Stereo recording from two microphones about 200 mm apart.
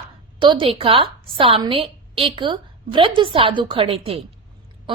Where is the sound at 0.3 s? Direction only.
25° right (ahead or behind).